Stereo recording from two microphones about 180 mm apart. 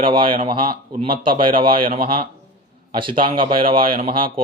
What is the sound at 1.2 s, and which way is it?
Speech, 25° right (ahead or behind).